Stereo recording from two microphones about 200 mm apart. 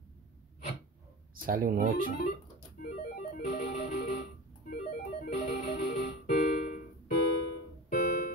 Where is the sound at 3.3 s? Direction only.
50° left (ahead or behind).